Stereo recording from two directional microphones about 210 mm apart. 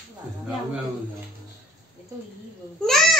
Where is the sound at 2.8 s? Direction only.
Centre (ahead or behind).